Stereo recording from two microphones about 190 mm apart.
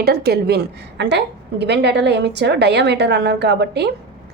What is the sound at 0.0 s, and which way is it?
A woman's voice, 55° right (ahead or behind).